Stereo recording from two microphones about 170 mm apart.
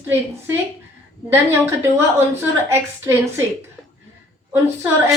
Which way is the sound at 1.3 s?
15° right (ahead or behind).